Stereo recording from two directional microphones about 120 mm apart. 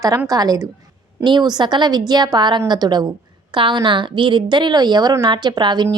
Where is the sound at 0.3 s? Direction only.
30° right (ahead or behind).